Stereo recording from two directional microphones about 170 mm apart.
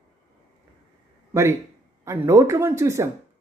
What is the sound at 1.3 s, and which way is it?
A woman's voice, 15° right (ahead or behind).